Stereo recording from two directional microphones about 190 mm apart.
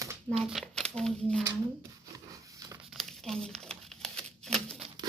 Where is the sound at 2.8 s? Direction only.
Centre (ahead or behind).